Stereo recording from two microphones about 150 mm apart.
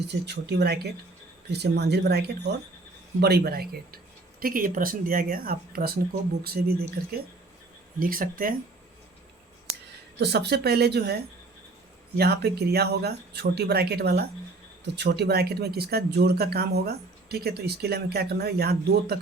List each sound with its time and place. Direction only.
0.3 s speech: 90° right
7.9 s speech: 70° right (ahead or behind)
10.2 s speech: 90° right